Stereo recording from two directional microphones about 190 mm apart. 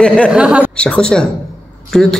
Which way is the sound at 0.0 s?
5° left (ahead or behind).